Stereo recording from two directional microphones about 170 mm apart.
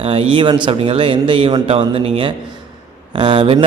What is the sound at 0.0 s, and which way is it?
A man's voice, 30° right (ahead or behind).